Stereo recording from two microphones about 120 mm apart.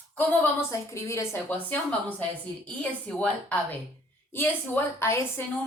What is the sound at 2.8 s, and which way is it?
A woman's voice, 10° left (ahead or behind).